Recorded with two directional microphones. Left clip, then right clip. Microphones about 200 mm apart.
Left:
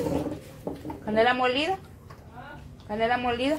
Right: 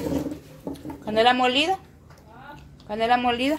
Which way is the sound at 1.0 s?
25° right (ahead or behind).